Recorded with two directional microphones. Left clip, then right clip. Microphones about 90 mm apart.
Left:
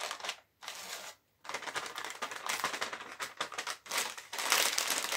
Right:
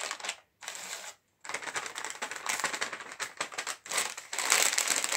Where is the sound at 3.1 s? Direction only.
45° right (ahead or behind).